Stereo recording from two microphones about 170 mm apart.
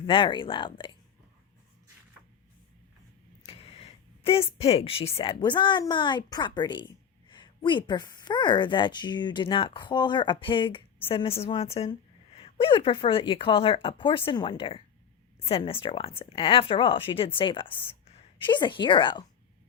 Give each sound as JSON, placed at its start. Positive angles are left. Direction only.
{"t": 0.0, "sound": "speech", "side_deg": 30}
{"t": 3.4, "sound": "a woman's voice", "side_deg": 35}